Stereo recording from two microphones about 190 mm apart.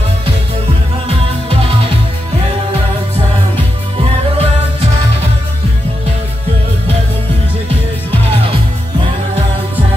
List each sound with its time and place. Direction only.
1.0 s music: 30° right (ahead or behind)
4.0 s music: 30° right (ahead or behind)